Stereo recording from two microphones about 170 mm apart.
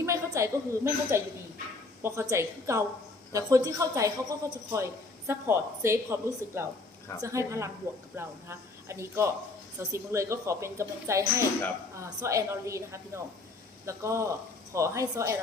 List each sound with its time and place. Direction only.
0.0 s a woman's voice: 15° right (ahead or behind)